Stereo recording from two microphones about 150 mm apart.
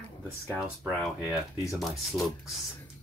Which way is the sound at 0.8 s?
5° right (ahead or behind).